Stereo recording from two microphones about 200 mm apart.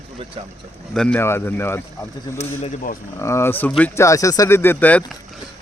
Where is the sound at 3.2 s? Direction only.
15° left (ahead or behind).